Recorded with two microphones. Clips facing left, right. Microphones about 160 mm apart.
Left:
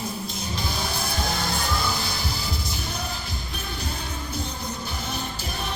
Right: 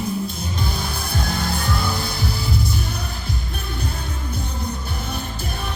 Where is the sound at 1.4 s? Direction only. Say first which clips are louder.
Right 3 dB; 60° right (ahead or behind).